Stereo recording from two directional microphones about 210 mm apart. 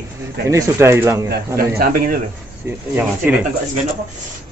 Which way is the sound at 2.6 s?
10° right (ahead or behind).